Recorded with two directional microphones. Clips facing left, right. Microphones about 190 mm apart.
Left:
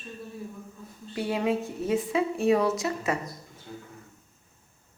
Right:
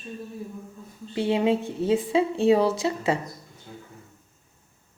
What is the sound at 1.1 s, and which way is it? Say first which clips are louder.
A woman's voice: right 5 dB; 25° right (ahead or behind).